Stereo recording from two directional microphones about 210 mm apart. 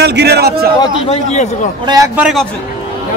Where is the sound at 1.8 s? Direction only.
15° right (ahead or behind).